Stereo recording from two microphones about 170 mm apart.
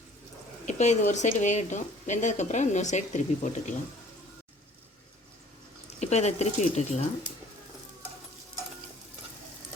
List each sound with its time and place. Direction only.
0.6 s speech: 45° left (ahead or behind)
6.0 s speech: 40° left (ahead or behind)